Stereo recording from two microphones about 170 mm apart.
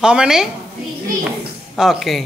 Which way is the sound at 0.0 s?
5° right (ahead or behind).